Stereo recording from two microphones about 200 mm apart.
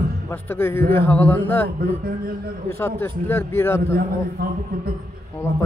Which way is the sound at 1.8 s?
45° right (ahead or behind).